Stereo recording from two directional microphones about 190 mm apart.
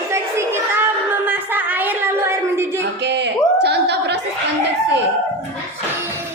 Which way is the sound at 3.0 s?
65° right (ahead or behind).